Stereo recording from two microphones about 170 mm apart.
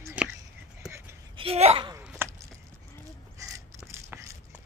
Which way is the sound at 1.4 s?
35° right (ahead or behind).